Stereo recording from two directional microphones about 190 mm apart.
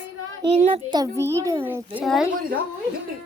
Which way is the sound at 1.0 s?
15° right (ahead or behind).